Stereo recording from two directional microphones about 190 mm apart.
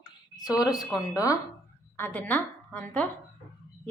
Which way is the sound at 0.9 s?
15° left (ahead or behind).